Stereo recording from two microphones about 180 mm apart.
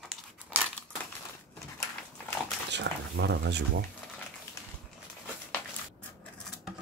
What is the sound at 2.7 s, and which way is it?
Speech, 75° right (ahead or behind).